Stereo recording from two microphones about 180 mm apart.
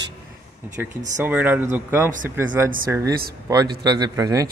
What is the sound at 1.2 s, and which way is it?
Speech, 10° right (ahead or behind).